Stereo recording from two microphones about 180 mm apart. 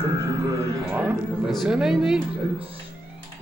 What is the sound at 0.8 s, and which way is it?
Music, 10° right (ahead or behind).